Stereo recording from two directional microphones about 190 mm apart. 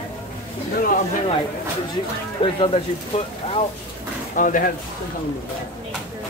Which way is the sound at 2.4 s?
30° left (ahead or behind).